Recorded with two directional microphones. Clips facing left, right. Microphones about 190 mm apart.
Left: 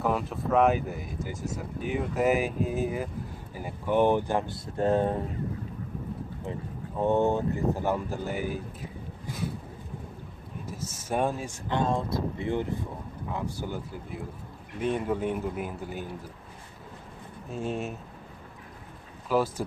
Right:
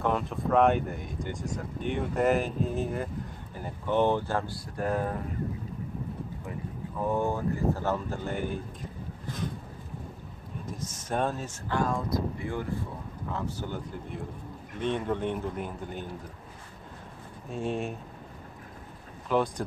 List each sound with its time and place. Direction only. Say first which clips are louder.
0.0 s speech: even; 5° left (ahead or behind); by 5.2 s 25° left (ahead or behind)
7.0 s speech: left 4 dB; 25° left (ahead or behind); by 8.5 s 5° left (ahead or behind)
10.7 s speech: left 2 dB; 5° left (ahead or behind)
11.7 s speech: left 1 dB; 25° left (ahead or behind); by 16.1 s 5° left (ahead or behind)
17.5 s speech: right 1 dB; centre (ahead or behind)
19.2 s speech: left 1 dB; 5° left (ahead or behind)